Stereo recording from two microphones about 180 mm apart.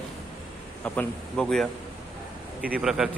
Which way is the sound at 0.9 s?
5° left (ahead or behind).